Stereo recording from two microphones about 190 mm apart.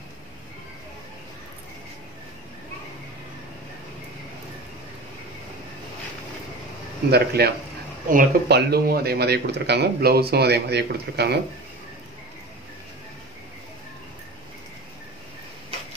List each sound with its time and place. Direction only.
7.1 s speech: 55° right (ahead or behind)